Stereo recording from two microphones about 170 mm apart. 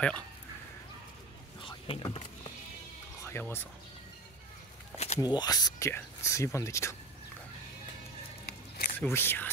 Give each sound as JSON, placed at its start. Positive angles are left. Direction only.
{"t": 1.6, "sound": "vehicle", "side_deg": 30}
{"t": 3.3, "sound": "speech", "side_deg": 15}
{"t": 4.9, "sound": "a sound", "side_deg": 40}
{"t": 5.2, "sound": "speech", "side_deg": 25}
{"t": 8.5, "sound": "a sound", "side_deg": 65}
{"t": 9.1, "sound": "speech", "side_deg": 15}